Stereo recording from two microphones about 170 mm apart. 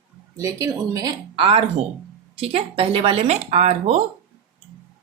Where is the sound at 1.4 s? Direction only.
30° right (ahead or behind).